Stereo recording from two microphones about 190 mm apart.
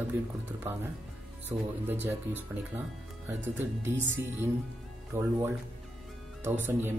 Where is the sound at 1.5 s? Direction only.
15° right (ahead or behind).